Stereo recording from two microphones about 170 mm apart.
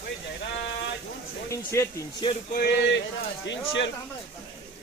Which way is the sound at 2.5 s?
65° left (ahead or behind).